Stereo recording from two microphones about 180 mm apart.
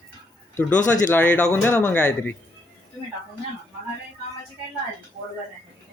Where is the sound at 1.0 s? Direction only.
10° left (ahead or behind).